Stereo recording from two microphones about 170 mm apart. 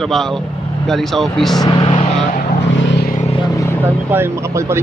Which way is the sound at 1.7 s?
30° left (ahead or behind).